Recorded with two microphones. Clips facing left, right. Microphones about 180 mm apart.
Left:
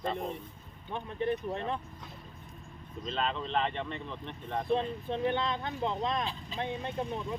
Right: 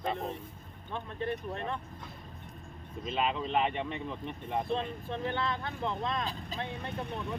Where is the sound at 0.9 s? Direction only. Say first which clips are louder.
Left 3 dB; 15° left (ahead or behind).